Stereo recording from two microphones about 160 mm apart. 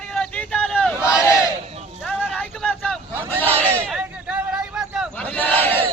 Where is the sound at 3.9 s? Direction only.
5° right (ahead or behind).